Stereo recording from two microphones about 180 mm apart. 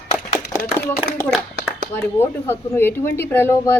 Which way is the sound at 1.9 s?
10° left (ahead or behind).